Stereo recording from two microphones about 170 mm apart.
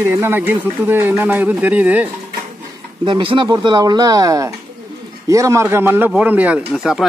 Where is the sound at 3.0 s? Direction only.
30° right (ahead or behind).